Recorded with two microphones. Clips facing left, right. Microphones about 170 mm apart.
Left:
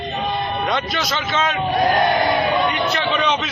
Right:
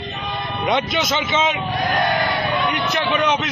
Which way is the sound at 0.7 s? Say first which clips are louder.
Right 2 dB; 20° right (ahead or behind).